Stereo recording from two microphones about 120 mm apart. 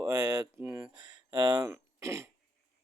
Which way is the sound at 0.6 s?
10° right (ahead or behind).